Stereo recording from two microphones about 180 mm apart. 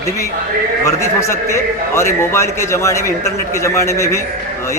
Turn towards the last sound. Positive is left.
turn(degrees=15)  # may be behind; listen again after turning